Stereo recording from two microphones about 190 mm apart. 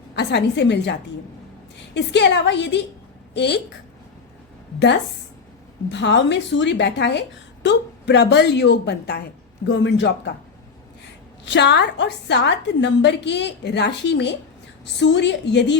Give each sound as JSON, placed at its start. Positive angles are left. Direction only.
{"t": 0.2, "sound": "a woman's voice", "side_deg": 65}
{"t": 5.9, "sound": "a woman's voice", "side_deg": 70}
{"t": 11.4, "sound": "a woman's voice", "side_deg": 65}